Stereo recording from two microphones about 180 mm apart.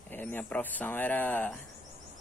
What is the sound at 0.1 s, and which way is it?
Speech, 10° left (ahead or behind).